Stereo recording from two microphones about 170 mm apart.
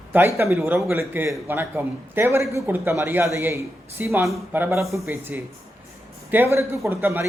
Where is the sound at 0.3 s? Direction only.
15° right (ahead or behind).